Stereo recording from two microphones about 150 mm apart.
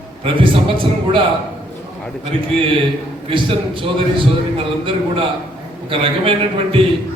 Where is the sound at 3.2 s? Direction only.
35° right (ahead or behind).